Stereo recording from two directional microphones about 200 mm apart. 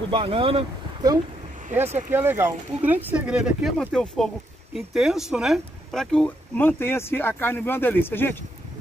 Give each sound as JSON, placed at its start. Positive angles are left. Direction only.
{"t": 0.1, "sound": "speech", "side_deg": -25}
{"t": 2.0, "sound": "speech", "side_deg": -10}